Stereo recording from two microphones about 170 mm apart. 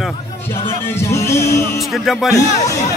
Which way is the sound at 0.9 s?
15° left (ahead or behind).